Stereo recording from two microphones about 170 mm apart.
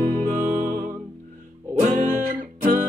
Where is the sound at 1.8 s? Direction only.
50° right (ahead or behind).